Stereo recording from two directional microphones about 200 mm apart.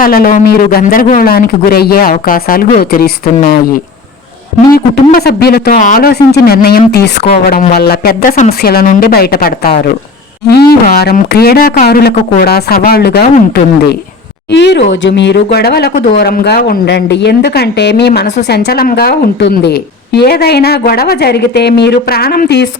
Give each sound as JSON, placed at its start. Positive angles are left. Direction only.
{"t": 0.0, "sound": "a woman's voice", "side_deg": 45}
{"t": 14.5, "sound": "a woman's voice", "side_deg": 60}